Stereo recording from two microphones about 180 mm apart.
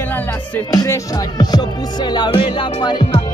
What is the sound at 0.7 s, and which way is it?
Music, 20° left (ahead or behind).